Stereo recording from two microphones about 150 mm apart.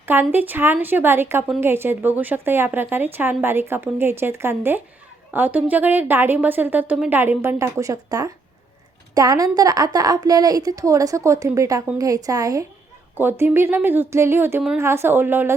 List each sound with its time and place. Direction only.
0.0 s a woman's voice: 15° right (ahead or behind)